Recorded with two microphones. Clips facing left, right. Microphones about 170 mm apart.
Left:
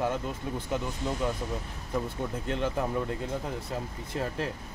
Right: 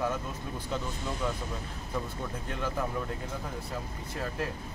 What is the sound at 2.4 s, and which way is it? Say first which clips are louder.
Speech: left 5 dB; 20° left (ahead or behind).